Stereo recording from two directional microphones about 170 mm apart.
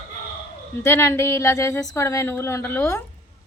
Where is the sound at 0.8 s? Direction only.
15° left (ahead or behind).